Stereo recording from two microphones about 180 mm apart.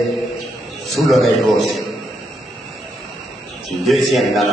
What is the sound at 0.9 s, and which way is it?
Speech, centre (ahead or behind).